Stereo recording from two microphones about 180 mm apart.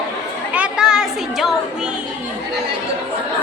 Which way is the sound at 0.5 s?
5° right (ahead or behind).